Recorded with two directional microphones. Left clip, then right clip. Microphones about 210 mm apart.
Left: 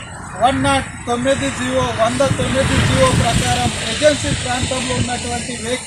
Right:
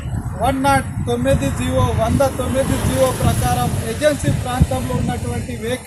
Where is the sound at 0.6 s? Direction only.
20° right (ahead or behind).